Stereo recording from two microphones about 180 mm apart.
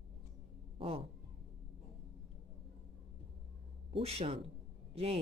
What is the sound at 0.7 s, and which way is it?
Cat, 30° right (ahead or behind).